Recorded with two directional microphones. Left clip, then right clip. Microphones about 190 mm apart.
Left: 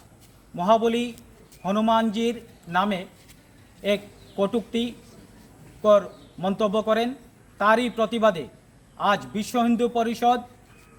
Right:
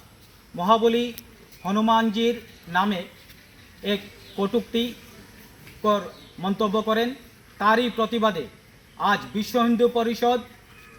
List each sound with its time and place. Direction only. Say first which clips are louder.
0.5 s a man's voice: right 1 dB; 20° left (ahead or behind)
3.8 s a man's voice: left 3 dB; 20° left (ahead or behind)
6.4 s a man's voice: left 1 dB; 25° left (ahead or behind)